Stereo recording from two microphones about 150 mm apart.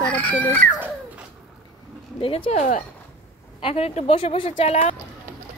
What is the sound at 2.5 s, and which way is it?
Speech, 60° left (ahead or behind).